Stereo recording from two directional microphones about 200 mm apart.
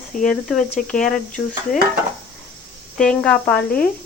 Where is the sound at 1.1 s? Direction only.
5° left (ahead or behind).